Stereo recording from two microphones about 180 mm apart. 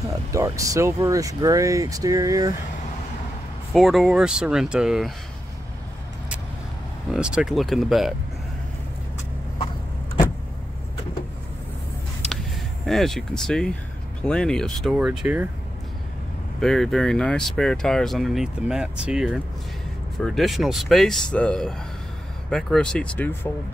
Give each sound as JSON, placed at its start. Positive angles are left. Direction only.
{"t": 0.3, "sound": "speech", "side_deg": -15}
{"t": 3.7, "sound": "speech", "side_deg": 0}
{"t": 7.2, "sound": "speech", "side_deg": -5}
{"t": 12.8, "sound": "speech", "side_deg": 0}
{"t": 16.5, "sound": "speech", "side_deg": 5}